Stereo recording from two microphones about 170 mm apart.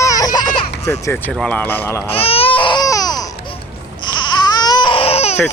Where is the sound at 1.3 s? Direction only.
5° left (ahead or behind).